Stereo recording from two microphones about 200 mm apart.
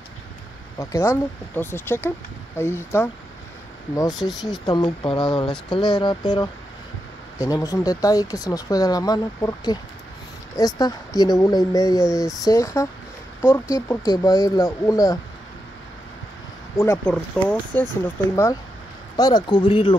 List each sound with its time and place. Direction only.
0.7 s speech: 15° left (ahead or behind)
4.1 s speech: centre (ahead or behind)
4.6 s speech: 20° left (ahead or behind)
16.7 s speech: 10° left (ahead or behind)